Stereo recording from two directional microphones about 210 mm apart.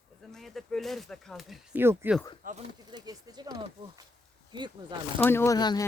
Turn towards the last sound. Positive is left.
turn(degrees=20)  # may be behind; listen again after turning